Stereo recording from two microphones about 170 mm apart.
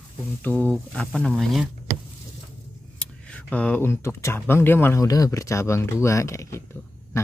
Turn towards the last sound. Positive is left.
turn(degrees=15)  # may be behind; listen again after turning